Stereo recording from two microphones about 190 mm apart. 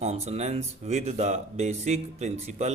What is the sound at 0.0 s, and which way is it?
Speech, 35° right (ahead or behind).